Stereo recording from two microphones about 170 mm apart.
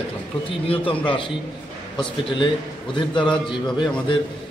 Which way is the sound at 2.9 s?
30° left (ahead or behind).